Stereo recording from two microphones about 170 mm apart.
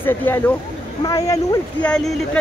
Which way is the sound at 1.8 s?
5° left (ahead or behind).